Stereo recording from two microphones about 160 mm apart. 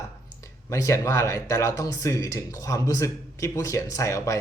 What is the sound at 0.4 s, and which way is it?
Speech, 20° left (ahead or behind).